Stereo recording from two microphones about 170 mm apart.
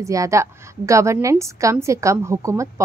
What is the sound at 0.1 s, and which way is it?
A woman's voice, 20° right (ahead or behind).